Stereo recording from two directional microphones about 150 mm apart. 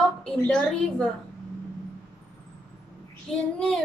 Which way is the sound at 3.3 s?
Centre (ahead or behind).